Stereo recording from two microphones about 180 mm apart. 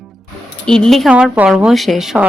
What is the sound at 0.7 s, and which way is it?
A woman's voice, 5° left (ahead or behind).